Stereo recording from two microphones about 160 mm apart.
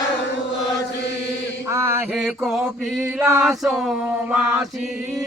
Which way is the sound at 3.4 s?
Centre (ahead or behind).